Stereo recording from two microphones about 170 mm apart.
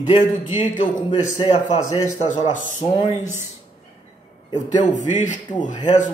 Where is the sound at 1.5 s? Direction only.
40° left (ahead or behind).